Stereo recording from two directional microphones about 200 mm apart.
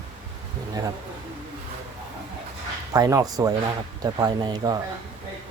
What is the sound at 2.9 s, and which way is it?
Speech, 15° right (ahead or behind).